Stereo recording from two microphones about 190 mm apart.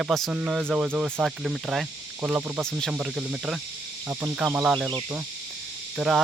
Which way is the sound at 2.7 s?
5° left (ahead or behind).